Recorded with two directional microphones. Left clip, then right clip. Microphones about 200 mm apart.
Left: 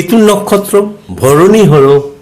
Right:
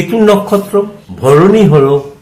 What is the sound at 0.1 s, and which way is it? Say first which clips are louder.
Speech: left 1 dB; 50° left (ahead or behind).